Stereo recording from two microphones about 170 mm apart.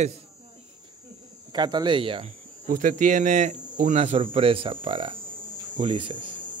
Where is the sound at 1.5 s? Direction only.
25° right (ahead or behind).